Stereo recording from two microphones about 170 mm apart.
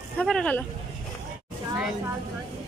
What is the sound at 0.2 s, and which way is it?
Speech, 5° left (ahead or behind).